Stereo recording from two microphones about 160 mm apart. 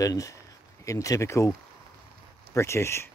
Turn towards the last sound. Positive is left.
turn(degrees=15)  # may be behind; listen again after turning